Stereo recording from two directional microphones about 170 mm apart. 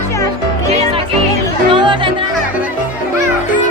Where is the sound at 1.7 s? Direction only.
30° right (ahead or behind).